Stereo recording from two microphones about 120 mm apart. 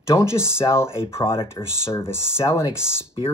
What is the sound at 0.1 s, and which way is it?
Speech, 20° left (ahead or behind).